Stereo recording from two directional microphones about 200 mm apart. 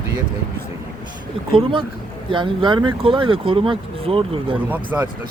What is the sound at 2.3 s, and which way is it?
Speech, 25° right (ahead or behind).